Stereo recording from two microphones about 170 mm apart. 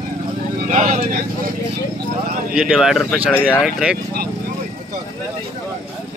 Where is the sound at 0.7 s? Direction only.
45° right (ahead or behind).